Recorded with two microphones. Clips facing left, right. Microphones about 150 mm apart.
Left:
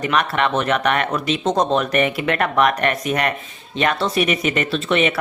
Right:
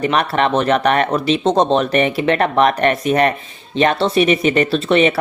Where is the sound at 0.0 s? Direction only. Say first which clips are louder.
Right 3 dB; 35° right (ahead or behind).